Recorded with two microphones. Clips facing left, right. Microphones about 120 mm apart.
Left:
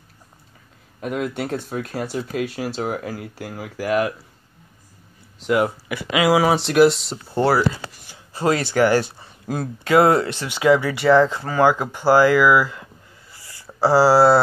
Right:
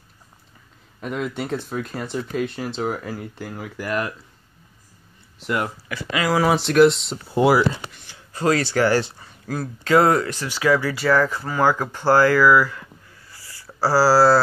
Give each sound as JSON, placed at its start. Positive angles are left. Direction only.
{"t": 1.0, "sound": "speech", "side_deg": 5}
{"t": 5.4, "sound": "speech", "side_deg": 10}
{"t": 7.5, "sound": "speech", "side_deg": -20}
{"t": 8.4, "sound": "speech", "side_deg": 20}
{"t": 13.3, "sound": "a sound", "side_deg": 20}